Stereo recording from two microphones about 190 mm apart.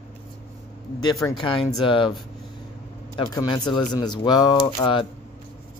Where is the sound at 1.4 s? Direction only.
25° left (ahead or behind).